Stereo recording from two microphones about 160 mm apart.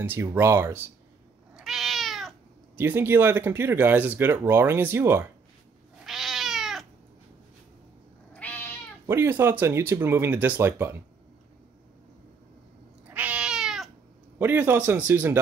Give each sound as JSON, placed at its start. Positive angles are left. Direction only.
{"t": 0.0, "sound": "speech", "side_deg": -15}
{"t": 1.6, "sound": "cat", "side_deg": 0}
{"t": 2.7, "sound": "speech", "side_deg": -15}
{"t": 6.0, "sound": "cat", "side_deg": 0}
{"t": 8.3, "sound": "cat", "side_deg": 10}
{"t": 9.0, "sound": "speech", "side_deg": -15}
{"t": 13.1, "sound": "cat", "side_deg": -10}
{"t": 14.4, "sound": "speech", "side_deg": -10}